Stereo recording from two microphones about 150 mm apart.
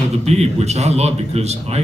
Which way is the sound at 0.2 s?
45° right (ahead or behind).